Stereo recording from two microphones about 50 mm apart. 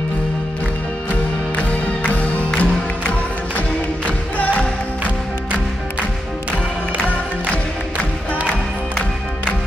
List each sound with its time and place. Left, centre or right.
1.6 s music: left
4.4 s music: left